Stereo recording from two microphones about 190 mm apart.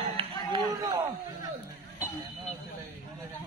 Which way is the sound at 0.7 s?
20° right (ahead or behind).